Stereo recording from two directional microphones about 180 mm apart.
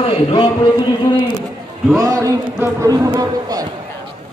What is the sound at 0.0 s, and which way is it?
Speech, 30° left (ahead or behind).